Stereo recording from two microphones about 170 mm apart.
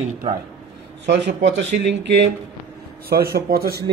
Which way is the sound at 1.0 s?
90° right.